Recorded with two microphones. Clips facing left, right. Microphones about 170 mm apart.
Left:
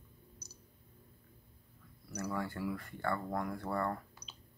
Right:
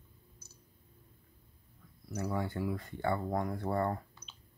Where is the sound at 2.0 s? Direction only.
20° right (ahead or behind).